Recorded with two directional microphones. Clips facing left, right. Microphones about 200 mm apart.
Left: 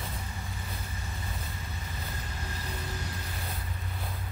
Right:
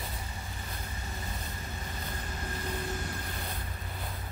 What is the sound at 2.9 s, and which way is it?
Vehicle, 50° right (ahead or behind).